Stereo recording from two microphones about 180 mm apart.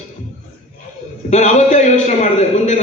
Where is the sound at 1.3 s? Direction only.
40° left (ahead or behind).